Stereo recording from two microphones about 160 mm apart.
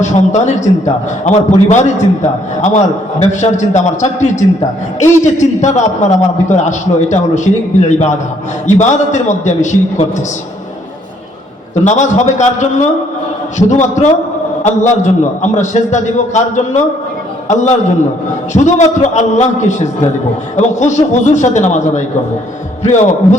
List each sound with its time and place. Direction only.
0.0 s a man's voice: 45° left (ahead or behind)
11.7 s a man's voice: 45° left (ahead or behind)